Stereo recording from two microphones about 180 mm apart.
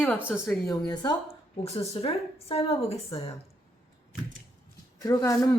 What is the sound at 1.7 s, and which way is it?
A woman's voice, 35° left (ahead or behind).